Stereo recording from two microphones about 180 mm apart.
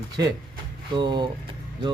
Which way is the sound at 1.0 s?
25° right (ahead or behind).